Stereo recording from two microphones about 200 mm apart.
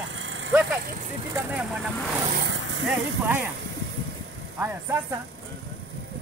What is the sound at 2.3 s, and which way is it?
Vehicle, 60° right (ahead or behind).